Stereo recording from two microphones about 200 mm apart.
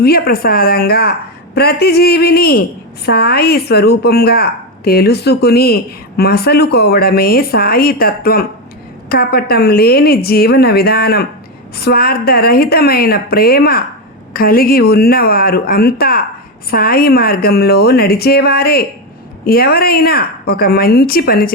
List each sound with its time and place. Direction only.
0.0 s a woman's voice: 50° left (ahead or behind)